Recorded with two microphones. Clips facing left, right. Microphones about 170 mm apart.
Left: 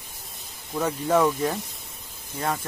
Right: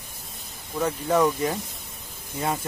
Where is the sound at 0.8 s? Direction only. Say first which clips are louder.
Even; 5° left (ahead or behind).